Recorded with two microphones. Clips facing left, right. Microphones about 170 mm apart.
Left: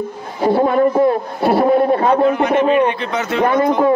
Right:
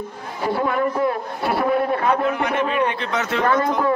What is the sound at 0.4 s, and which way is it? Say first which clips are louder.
A man's voice: left 8 dB; 30° left (ahead or behind).